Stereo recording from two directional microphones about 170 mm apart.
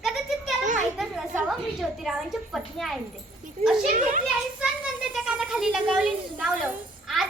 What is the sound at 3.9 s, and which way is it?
Children playing, 50° right (ahead or behind).